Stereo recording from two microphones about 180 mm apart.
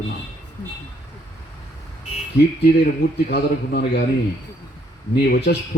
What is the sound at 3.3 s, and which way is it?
Speech, 65° left (ahead or behind).